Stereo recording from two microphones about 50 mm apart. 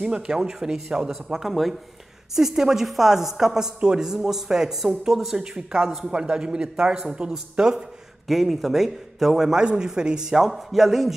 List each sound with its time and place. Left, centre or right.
0.0 s a woman's voice: centre